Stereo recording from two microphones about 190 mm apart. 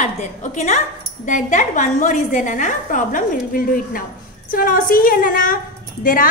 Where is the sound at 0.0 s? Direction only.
40° left (ahead or behind).